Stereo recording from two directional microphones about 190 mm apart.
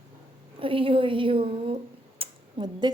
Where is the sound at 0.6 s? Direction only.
30° right (ahead or behind).